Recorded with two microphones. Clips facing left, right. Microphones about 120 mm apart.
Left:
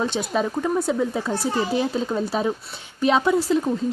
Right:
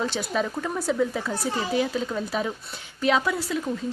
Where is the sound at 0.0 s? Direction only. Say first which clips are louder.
Left 3 dB; 20° left (ahead or behind).